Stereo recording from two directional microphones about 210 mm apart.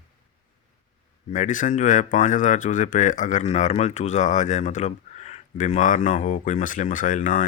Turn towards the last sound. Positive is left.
turn(degrees=35)  # may be behind; listen again after turning